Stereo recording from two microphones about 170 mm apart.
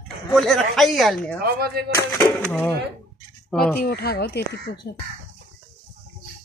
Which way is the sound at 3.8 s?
65° left (ahead or behind).